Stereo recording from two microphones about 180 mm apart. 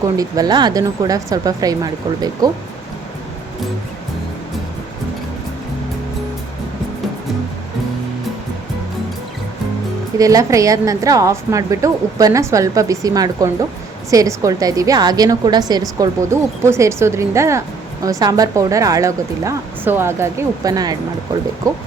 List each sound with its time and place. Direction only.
0.0 s a woman's voice: 20° right (ahead or behind)
10.2 s a woman's voice: 20° right (ahead or behind)